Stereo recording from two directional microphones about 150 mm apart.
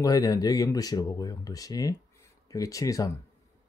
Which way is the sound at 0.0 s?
25° left (ahead or behind).